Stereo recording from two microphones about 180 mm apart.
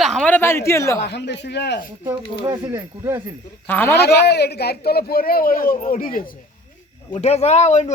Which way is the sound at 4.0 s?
65° left (ahead or behind).